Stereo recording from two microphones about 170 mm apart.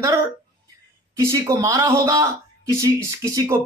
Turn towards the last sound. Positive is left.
turn(degrees=-20)  # may be behind; listen again after turning